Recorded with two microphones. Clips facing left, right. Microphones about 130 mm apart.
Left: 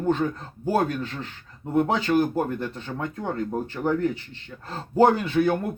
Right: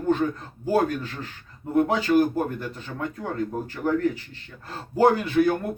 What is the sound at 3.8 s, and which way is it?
Speech, 30° left (ahead or behind).